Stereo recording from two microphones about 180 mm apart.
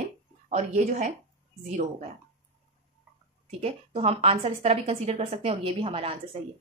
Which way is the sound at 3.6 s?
35° right (ahead or behind).